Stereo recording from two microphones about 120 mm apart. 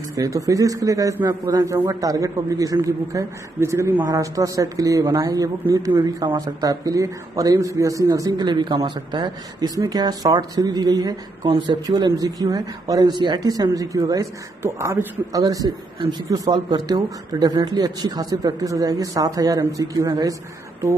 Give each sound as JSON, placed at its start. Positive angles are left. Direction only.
{"t": 0.1, "sound": "a man's voice", "side_deg": -25}